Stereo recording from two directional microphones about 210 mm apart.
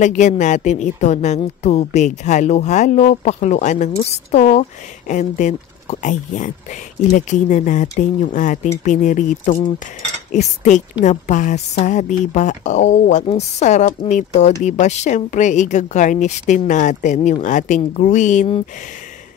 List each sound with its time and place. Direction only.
0.0 s speech: 35° left (ahead or behind)